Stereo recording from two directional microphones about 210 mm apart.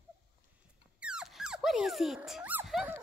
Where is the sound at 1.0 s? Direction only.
5° right (ahead or behind).